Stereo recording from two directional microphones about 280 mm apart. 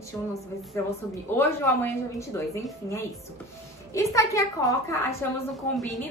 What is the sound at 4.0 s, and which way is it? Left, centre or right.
A woman's voice, centre.